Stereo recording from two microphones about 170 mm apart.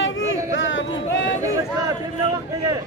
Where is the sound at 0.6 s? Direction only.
90° left.